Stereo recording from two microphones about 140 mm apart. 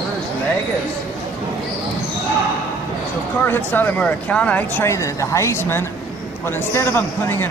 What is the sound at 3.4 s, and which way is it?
Speech, 15° left (ahead or behind).